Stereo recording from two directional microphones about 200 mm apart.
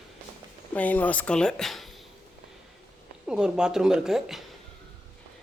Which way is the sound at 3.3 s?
5° right (ahead or behind).